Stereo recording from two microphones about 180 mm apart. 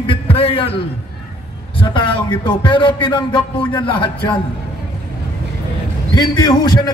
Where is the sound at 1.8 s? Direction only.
25° left (ahead or behind).